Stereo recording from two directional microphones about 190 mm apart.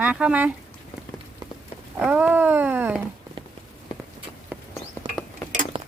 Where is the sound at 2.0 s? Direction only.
10° right (ahead or behind).